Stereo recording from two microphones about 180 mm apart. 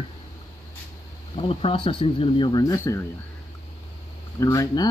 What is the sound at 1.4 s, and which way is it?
Speech, 30° left (ahead or behind).